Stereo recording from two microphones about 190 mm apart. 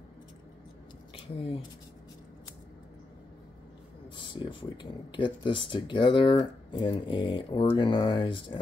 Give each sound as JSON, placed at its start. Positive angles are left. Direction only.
{"t": 1.1, "sound": "speech", "side_deg": 30}
{"t": 4.3, "sound": "speech", "side_deg": 25}